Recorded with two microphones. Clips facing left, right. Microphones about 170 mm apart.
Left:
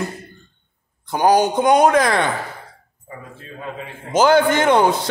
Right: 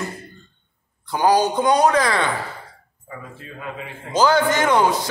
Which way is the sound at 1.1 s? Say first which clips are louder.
Left 2 dB; 20° left (ahead or behind).